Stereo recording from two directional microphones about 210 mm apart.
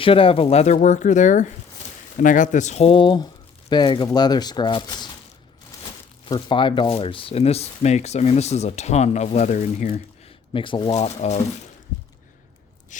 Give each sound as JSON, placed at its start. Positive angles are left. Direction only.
{"t": 0.0, "sound": "speech", "side_deg": 25}
{"t": 6.2, "sound": "speech", "side_deg": 25}
{"t": 10.5, "sound": "speech", "side_deg": 25}
{"t": 12.9, "sound": "speech", "side_deg": 35}